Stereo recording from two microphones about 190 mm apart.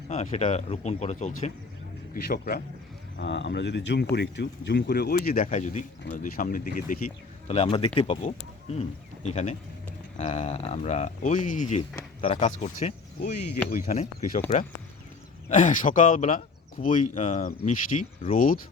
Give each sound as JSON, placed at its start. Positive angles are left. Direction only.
{"t": 0.1, "sound": "speech", "side_deg": 35}
{"t": 2.1, "sound": "speech", "side_deg": 50}
{"t": 3.2, "sound": "speech", "side_deg": 70}
{"t": 7.4, "sound": "speech", "side_deg": 35}
{"t": 12.2, "sound": "speech", "side_deg": 30}
{"t": 13.7, "sound": "speech", "side_deg": 45}
{"t": 15.4, "sound": "speech", "side_deg": 40}